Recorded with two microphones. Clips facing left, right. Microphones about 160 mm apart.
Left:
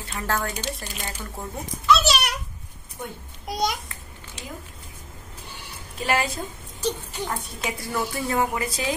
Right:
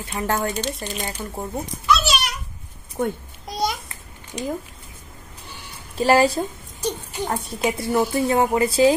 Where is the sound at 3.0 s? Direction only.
55° right (ahead or behind).